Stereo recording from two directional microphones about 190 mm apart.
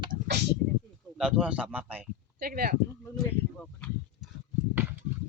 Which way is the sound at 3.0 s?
5° left (ahead or behind).